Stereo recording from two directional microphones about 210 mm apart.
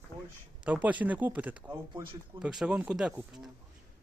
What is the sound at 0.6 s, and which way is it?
Speech, 5° right (ahead or behind).